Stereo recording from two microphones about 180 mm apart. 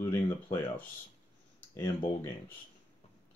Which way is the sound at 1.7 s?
20° left (ahead or behind).